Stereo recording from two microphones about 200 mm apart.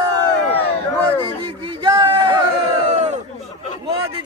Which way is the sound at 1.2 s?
25° right (ahead or behind).